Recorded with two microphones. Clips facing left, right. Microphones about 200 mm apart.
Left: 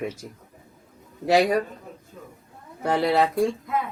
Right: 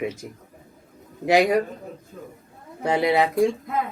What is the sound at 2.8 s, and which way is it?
Speech, 15° right (ahead or behind).